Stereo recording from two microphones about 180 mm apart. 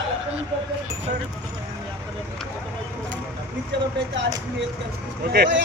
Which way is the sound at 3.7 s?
75° right (ahead or behind).